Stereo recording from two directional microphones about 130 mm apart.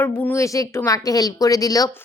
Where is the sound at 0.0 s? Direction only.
20° left (ahead or behind).